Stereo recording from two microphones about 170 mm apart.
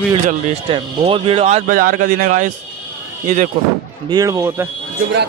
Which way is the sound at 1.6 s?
55° right (ahead or behind).